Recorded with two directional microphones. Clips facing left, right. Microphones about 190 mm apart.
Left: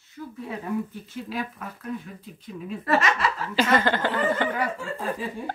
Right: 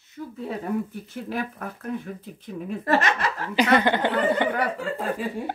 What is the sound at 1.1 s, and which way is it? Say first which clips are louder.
Speech: right 3 dB; 55° right (ahead or behind).